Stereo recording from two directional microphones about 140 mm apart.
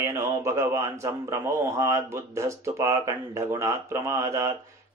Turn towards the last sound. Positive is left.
turn(degrees=-20)  # may be behind; listen again after turning